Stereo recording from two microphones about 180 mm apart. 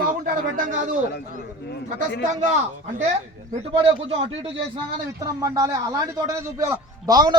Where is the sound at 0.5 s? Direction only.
45° right (ahead or behind).